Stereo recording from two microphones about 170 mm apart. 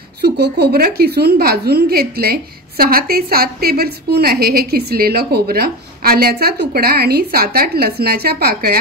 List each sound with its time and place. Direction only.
0.2 s a woman's voice: 70° right (ahead or behind)